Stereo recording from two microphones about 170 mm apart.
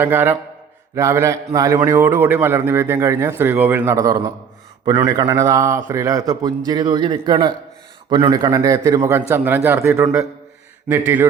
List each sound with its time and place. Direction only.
0.0 s a man's voice: 15° right (ahead or behind)